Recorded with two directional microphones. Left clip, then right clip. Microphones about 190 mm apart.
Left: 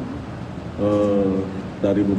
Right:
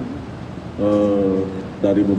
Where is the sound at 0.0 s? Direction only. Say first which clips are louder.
Right 1 dB; centre (ahead or behind).